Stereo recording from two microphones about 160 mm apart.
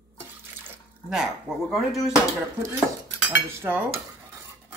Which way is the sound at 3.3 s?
15° right (ahead or behind).